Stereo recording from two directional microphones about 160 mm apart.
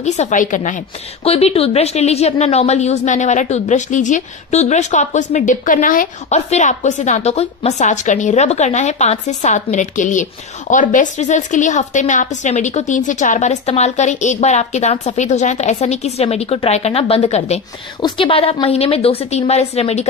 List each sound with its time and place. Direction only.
0.0 s a woman's voice: 45° left (ahead or behind)
1.2 s a woman's voice: 40° left (ahead or behind)